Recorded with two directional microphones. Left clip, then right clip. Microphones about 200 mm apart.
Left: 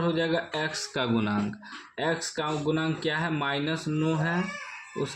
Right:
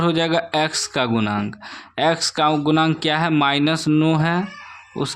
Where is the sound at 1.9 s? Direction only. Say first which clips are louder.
Right 11 dB; 45° right (ahead or behind).